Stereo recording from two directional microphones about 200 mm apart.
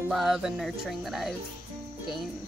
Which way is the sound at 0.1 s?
Centre (ahead or behind).